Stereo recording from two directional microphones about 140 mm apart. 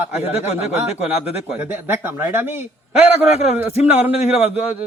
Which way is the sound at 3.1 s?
50° left (ahead or behind).